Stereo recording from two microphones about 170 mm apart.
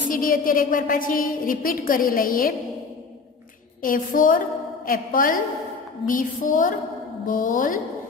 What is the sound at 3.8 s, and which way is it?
A woman's voice, 55° left (ahead or behind).